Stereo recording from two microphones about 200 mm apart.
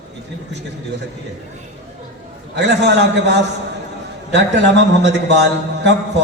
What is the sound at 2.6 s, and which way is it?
A man's voice, 60° right (ahead or behind).